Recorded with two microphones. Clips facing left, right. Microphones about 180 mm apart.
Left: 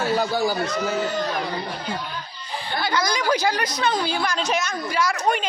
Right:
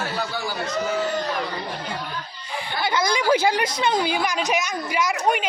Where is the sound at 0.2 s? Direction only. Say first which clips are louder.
Left 6 dB; 40° left (ahead or behind).